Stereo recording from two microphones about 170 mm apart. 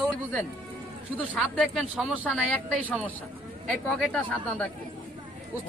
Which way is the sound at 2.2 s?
5° left (ahead or behind).